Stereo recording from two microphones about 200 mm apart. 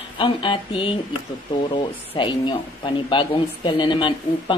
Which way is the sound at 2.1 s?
25° left (ahead or behind).